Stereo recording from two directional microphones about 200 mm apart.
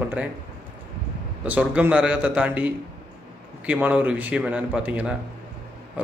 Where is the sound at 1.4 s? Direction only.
10° right (ahead or behind).